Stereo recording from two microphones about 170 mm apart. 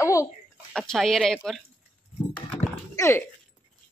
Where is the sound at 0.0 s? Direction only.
20° left (ahead or behind).